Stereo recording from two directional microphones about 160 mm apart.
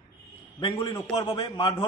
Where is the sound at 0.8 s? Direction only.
30° left (ahead or behind).